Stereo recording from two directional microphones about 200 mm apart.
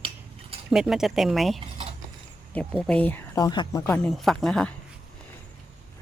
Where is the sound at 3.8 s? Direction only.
5° left (ahead or behind).